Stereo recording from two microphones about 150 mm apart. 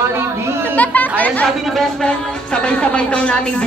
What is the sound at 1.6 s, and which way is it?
Speech, centre (ahead or behind).